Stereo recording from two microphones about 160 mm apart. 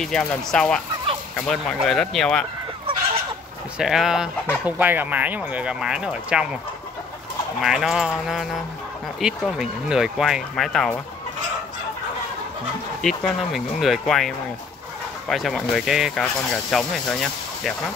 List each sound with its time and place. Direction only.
0.0 s speech: 5° left (ahead or behind)
3.7 s speech: 5° right (ahead or behind)
7.6 s speech: 5° right (ahead or behind)
13.0 s speech: centre (ahead or behind)